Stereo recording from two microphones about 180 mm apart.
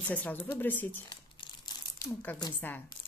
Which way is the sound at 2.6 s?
10° left (ahead or behind).